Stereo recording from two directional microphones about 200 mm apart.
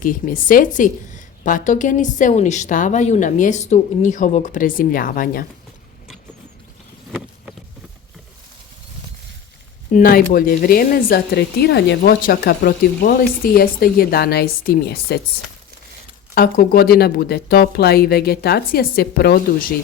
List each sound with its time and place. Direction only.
0.0 s a woman's voice: 45° left (ahead or behind)
9.9 s speech: 45° left (ahead or behind)
16.3 s speech: 50° left (ahead or behind)